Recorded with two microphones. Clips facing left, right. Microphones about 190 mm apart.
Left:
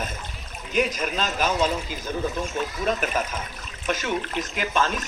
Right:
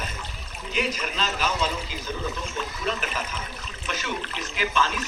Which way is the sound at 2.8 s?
50° left (ahead or behind).